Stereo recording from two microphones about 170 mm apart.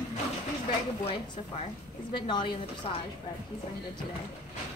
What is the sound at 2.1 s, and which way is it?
Speech, 30° left (ahead or behind).